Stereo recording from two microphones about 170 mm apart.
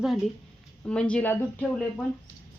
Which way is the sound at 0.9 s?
5° left (ahead or behind).